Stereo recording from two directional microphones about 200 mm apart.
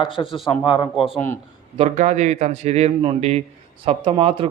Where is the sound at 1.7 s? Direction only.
35° right (ahead or behind).